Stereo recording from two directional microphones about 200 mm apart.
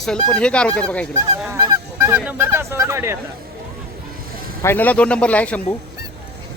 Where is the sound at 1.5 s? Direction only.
15° right (ahead or behind).